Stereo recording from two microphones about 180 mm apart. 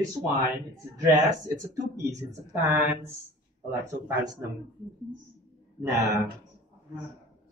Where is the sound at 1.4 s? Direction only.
20° right (ahead or behind).